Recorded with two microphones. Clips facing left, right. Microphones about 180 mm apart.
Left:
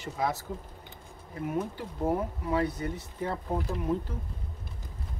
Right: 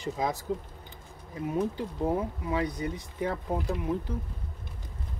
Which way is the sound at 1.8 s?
15° right (ahead or behind).